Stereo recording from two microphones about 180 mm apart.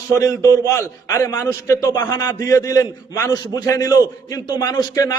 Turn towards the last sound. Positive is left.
turn(degrees=20)  # may be behind; listen again after turning